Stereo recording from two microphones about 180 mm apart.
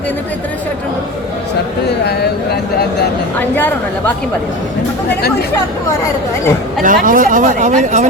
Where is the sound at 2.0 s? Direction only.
65° left (ahead or behind).